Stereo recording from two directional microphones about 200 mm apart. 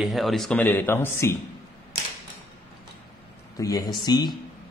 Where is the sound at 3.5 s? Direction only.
15° left (ahead or behind).